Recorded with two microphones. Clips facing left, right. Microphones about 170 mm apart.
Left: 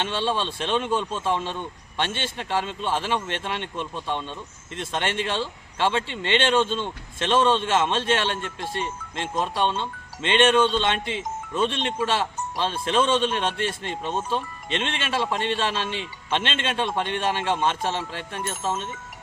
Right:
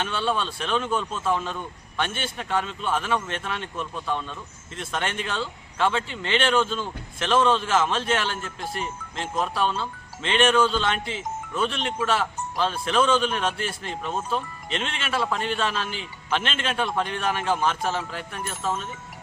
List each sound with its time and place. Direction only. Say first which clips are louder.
0.0 s speech: left 1 dB; 25° left (ahead or behind)